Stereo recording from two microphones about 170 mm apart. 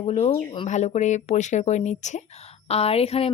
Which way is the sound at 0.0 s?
35° left (ahead or behind).